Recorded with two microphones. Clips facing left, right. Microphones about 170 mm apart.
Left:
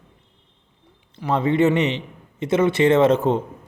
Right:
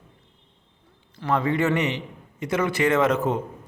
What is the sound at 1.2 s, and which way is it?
A man's voice, 20° left (ahead or behind).